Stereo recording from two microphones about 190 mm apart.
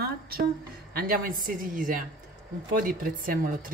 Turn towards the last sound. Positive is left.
turn(degrees=-45)  # may be behind; listen again after turning